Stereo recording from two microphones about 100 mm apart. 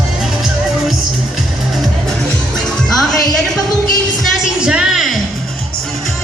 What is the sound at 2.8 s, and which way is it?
Music, 5° left (ahead or behind).